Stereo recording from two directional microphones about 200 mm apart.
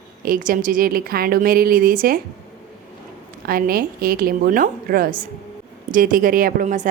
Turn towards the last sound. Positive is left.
turn(degrees=-40)  # may be behind; listen again after turning